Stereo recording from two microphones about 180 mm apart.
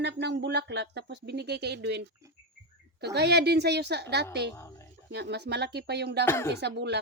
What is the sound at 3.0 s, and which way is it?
Speech, 70° right (ahead or behind).